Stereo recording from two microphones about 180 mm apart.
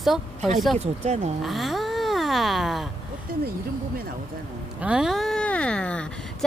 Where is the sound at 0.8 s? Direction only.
40° right (ahead or behind).